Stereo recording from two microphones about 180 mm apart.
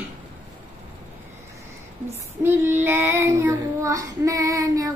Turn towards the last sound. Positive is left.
turn(degrees=-20)  # may be behind; listen again after turning